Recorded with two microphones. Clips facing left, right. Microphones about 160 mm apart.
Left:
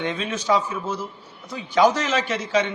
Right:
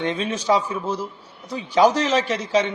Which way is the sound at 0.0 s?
30° right (ahead or behind).